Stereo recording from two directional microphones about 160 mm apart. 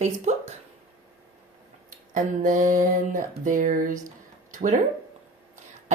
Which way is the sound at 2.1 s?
55° right (ahead or behind).